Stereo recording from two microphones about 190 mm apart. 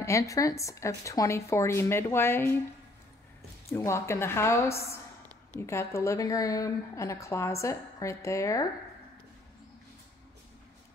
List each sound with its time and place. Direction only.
0.0 s a woman's voice: 15° left (ahead or behind)
3.7 s a woman's voice: 15° left (ahead or behind)